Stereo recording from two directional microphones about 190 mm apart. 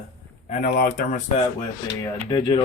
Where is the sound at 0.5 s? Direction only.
45° left (ahead or behind).